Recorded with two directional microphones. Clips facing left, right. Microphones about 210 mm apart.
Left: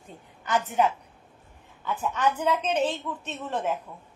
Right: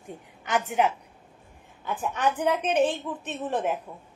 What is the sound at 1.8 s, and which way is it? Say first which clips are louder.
A child's voice: even; 15° right (ahead or behind).